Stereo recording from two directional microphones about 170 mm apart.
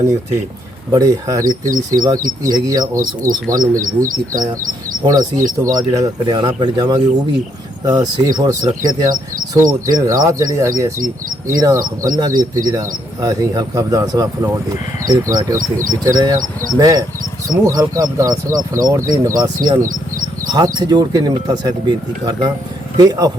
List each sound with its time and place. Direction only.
0.9 s speech: 20° right (ahead or behind)
3.8 s speech: 50° right (ahead or behind)
5.0 s speech: 20° right (ahead or behind)
19.8 s bird: 50° right (ahead or behind)
20.5 s speech: 25° right (ahead or behind)